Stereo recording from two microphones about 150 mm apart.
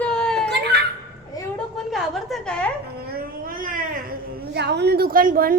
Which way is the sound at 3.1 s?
85° right.